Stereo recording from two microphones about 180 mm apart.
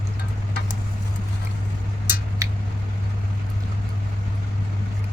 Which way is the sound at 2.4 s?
20° right (ahead or behind).